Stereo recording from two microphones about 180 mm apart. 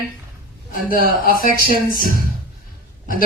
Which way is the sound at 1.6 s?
50° left (ahead or behind).